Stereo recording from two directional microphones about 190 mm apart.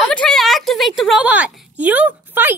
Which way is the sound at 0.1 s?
5° left (ahead or behind).